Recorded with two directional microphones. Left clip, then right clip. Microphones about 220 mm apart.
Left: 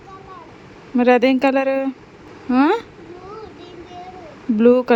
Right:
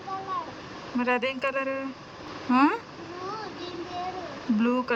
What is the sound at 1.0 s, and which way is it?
Speech, 30° left (ahead or behind).